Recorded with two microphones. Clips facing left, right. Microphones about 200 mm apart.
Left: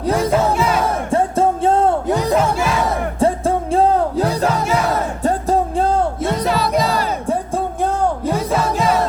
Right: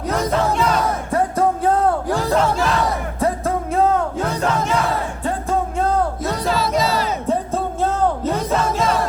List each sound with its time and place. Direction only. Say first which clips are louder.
0.0 s music: left 4 dB; 30° left (ahead or behind)
0.5 s music: left 1 dB; 5° left (ahead or behind)
1.1 s music: left 2 dB; 25° left (ahead or behind)
2.3 s music: right 2 dB; 10° left (ahead or behind)
3.2 s music: left 4 dB; 30° left (ahead or behind)
6.5 s music: right 1 dB; 60° left (ahead or behind)
7.3 s music: left 1 dB; 15° left (ahead or behind)